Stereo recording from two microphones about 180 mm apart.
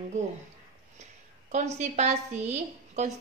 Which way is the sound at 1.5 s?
40° right (ahead or behind).